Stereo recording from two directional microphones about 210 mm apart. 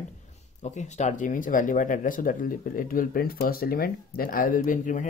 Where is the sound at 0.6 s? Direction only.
35° left (ahead or behind).